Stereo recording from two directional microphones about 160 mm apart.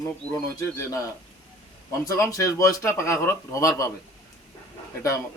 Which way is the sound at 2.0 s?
20° left (ahead or behind).